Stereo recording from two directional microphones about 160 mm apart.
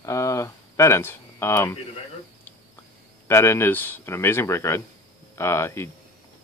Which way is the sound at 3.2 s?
15° left (ahead or behind).